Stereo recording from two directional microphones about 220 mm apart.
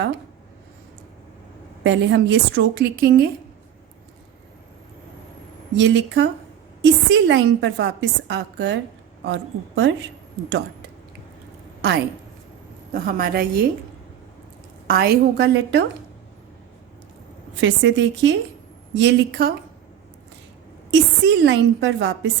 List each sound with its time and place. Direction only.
1.8 s a woman's voice: 55° right (ahead or behind)
5.7 s a woman's voice: 55° right (ahead or behind)
12.9 s a woman's voice: 40° right (ahead or behind)
14.8 s a woman's voice: 45° right (ahead or behind)
17.6 s a woman's voice: 60° right (ahead or behind)
20.9 s a woman's voice: 55° right (ahead or behind)